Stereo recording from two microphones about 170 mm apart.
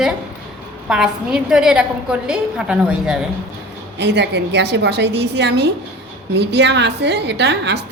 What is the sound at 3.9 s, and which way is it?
A woman's voice, 90° right.